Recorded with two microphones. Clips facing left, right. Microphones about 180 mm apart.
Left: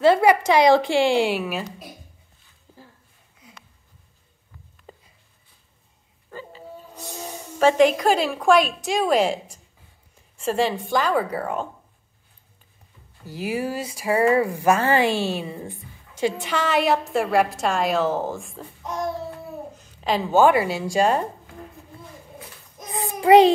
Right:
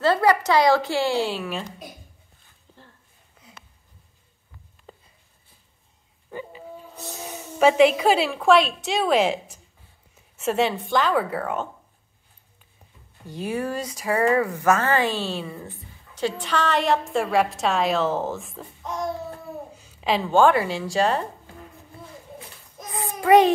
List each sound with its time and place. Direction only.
0.0 s a woman's voice: 15° left (ahead or behind)
2.7 s a sound: 5° left (ahead or behind)
4.9 s a sound: 5° left (ahead or behind)
7.5 s a woman's voice: 5° right (ahead or behind)
10.1 s a sound: 5° right (ahead or behind)
10.8 s a woman's voice: centre (ahead or behind)
13.2 s a woman's voice: 5° left (ahead or behind)
14.0 s speech: 25° left (ahead or behind)
14.5 s a woman's voice: 15° left (ahead or behind)
19.7 s a woman's voice: 10° right (ahead or behind); by 21.2 s 15° left (ahead or behind)
22.8 s child singing: 20° left (ahead or behind)